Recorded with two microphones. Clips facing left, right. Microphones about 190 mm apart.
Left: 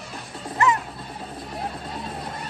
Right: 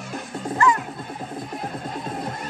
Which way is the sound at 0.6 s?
20° left (ahead or behind).